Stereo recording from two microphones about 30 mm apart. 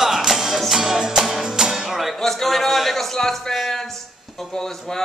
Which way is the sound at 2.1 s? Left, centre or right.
Centre.